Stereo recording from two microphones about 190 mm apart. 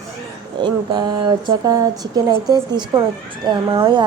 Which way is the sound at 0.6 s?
25° right (ahead or behind).